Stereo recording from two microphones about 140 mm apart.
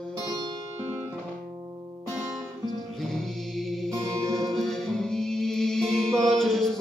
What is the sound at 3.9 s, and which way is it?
Music, 25° right (ahead or behind).